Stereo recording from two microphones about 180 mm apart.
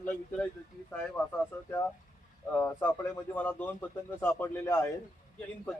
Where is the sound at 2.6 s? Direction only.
10° left (ahead or behind).